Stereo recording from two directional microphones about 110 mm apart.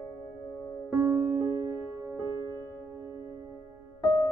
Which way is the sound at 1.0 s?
20° right (ahead or behind).